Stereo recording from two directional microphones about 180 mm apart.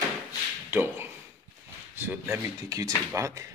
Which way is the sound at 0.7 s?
10° right (ahead or behind).